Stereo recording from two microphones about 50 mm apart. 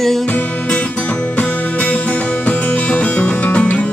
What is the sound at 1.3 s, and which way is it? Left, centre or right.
Music, left.